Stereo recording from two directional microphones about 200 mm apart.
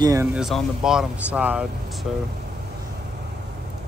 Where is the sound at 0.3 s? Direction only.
Centre (ahead or behind).